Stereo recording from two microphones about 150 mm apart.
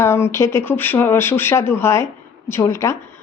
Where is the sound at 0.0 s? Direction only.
15° left (ahead or behind).